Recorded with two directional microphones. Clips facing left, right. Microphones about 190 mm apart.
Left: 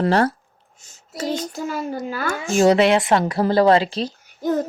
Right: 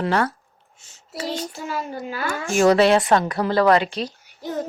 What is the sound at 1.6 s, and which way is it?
Speech, 45° left (ahead or behind).